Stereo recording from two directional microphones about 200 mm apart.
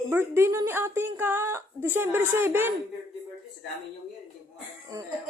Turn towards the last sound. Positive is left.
turn(degrees=-15)  # may be behind; listen again after turning